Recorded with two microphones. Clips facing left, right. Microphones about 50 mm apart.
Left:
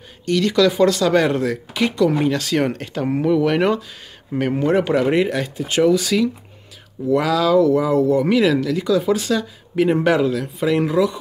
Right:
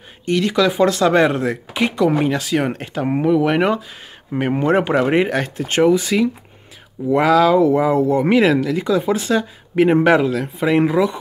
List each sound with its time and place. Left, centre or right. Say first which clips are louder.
0.2 s speech: even; right
5.4 s speech: right 1 dB; right
5.9 s speech: right 1 dB; right